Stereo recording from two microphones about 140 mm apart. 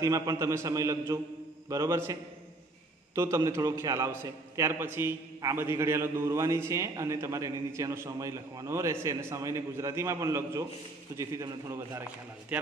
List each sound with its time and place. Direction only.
0.0 s a man's voice: 25° right (ahead or behind)
3.2 s a man's voice: 20° right (ahead or behind)